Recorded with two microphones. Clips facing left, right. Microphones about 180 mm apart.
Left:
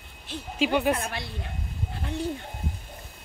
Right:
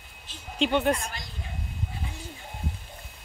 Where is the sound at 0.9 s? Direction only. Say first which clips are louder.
Left 2 dB; 65° left (ahead or behind).